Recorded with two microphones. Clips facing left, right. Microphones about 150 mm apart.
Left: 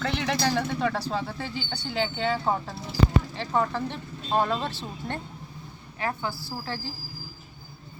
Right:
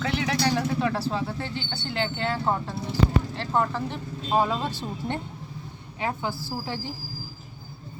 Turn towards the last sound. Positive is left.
turn(degrees=-15)  # may be behind; listen again after turning